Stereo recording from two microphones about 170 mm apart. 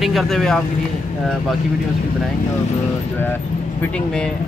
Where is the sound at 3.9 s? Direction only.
5° left (ahead or behind).